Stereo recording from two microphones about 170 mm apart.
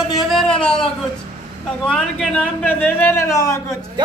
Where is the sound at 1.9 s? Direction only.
5° left (ahead or behind).